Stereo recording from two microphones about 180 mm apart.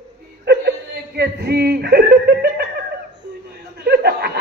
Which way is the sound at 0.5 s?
65° right (ahead or behind).